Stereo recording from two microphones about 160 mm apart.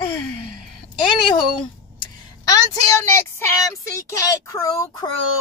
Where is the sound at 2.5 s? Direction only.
20° left (ahead or behind).